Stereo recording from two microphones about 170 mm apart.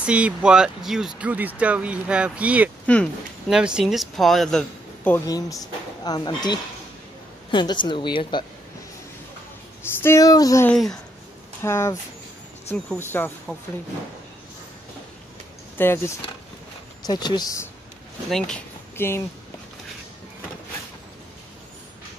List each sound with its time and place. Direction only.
0.0 s speech: 5° right (ahead or behind)
2.9 s speech: centre (ahead or behind)
5.1 s speech: 20° left (ahead or behind)
10.0 s speech: 20° left (ahead or behind)
10.7 s speech: 5° left (ahead or behind)
11.6 s speech: 15° left (ahead or behind)
15.8 s speech: 10° left (ahead or behind)
17.0 s speech: 25° left (ahead or behind)
18.9 s speech: 15° left (ahead or behind)